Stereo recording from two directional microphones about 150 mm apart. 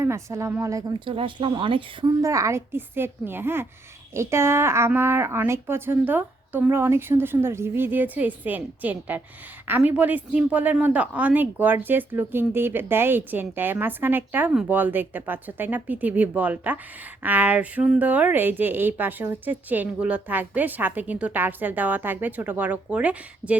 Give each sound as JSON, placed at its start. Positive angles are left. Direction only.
{"t": 0.0, "sound": "speech", "side_deg": -20}
{"t": 2.0, "sound": "speech", "side_deg": -20}